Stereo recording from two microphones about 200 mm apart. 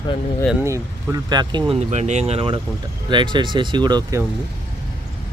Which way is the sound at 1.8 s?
35° right (ahead or behind).